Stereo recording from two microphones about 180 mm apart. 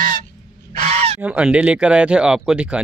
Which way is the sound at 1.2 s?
5° right (ahead or behind).